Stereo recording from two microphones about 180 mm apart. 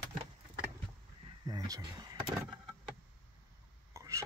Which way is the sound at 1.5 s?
20° right (ahead or behind).